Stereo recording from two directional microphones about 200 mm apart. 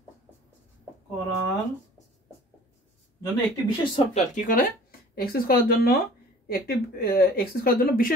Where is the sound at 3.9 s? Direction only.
35° left (ahead or behind).